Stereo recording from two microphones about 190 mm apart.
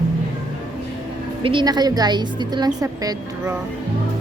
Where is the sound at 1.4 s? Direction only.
25° right (ahead or behind).